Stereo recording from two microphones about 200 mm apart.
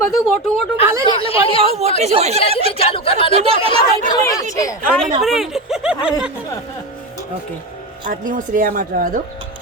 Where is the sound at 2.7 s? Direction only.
30° left (ahead or behind).